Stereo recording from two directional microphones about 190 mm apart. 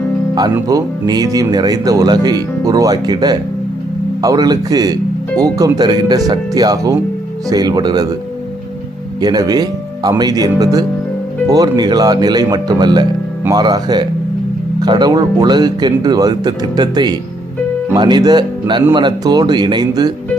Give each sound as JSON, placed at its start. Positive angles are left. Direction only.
{"t": 0.5, "sound": "speech", "side_deg": -15}
{"t": 9.2, "sound": "speech", "side_deg": -20}